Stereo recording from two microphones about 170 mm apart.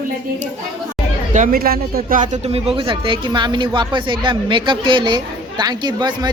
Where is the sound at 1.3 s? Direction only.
55° right (ahead or behind).